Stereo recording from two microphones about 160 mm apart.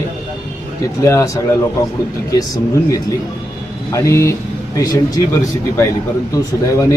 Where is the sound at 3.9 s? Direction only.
20° left (ahead or behind).